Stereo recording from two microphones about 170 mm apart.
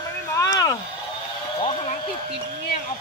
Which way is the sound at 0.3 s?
20° left (ahead or behind).